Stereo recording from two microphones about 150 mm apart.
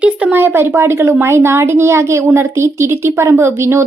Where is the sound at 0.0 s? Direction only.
10° right (ahead or behind).